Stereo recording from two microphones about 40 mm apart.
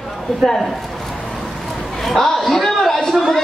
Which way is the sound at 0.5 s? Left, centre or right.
Centre.